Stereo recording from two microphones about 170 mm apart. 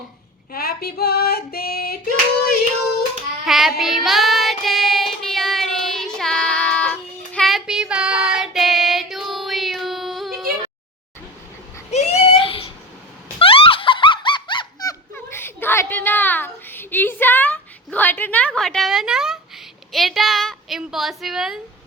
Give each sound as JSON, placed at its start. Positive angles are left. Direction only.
{"t": 0.5, "sound": "female singing", "side_deg": 65}
{"t": 3.4, "sound": "child singing", "side_deg": 0}
{"t": 11.9, "sound": "a sound", "side_deg": 40}
{"t": 19.9, "sound": "a woman's voice", "side_deg": 0}